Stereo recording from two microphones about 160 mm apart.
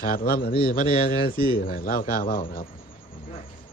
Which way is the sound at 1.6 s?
65° left (ahead or behind).